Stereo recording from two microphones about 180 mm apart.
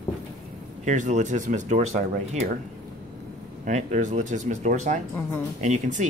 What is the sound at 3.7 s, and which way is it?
Speech, 40° right (ahead or behind).